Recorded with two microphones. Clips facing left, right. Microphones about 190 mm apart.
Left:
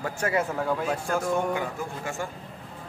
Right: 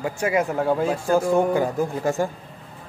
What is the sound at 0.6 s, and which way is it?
A man's voice, 30° right (ahead or behind).